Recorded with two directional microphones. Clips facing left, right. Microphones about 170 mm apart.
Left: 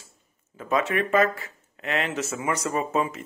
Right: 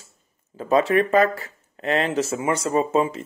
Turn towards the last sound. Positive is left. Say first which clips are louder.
# right 5 dB
turn(degrees=-30)  # may be behind; listen again after turning